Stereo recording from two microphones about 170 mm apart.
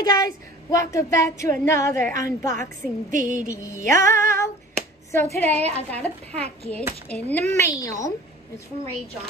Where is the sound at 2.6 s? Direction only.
50° right (ahead or behind).